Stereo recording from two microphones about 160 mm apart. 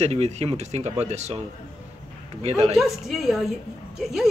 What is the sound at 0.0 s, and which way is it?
Speech, 40° right (ahead or behind).